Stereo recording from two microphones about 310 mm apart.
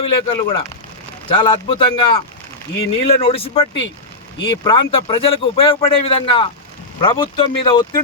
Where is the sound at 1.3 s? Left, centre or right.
Centre.